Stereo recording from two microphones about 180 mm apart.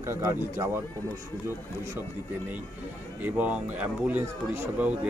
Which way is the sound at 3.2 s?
10° right (ahead or behind).